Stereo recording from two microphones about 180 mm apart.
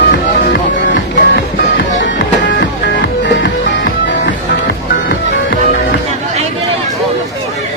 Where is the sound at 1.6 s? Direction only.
80° left.